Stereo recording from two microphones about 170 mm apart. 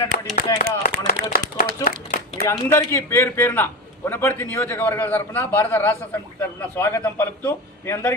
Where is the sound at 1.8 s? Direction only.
20° left (ahead or behind).